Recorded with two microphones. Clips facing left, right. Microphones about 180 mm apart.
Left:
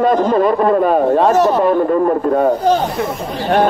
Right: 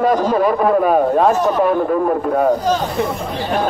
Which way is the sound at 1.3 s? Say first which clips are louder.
Left 4 dB; 75° left (ahead or behind).